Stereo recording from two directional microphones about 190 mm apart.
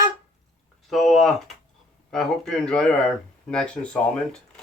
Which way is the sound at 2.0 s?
Centre (ahead or behind).